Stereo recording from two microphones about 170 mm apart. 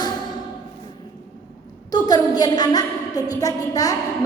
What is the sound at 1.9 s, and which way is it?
A woman's voice, 25° left (ahead or behind).